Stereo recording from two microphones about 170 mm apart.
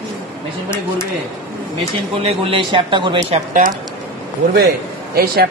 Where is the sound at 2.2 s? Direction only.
30° right (ahead or behind).